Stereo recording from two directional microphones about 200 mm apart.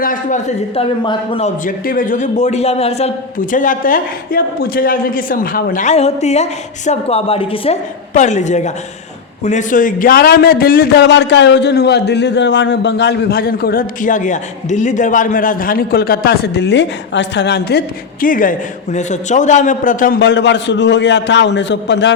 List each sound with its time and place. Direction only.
0.0 s speech: 40° left (ahead or behind)
3.5 s a man's voice: 40° left (ahead or behind)
20.1 s a man's voice: 60° left (ahead or behind)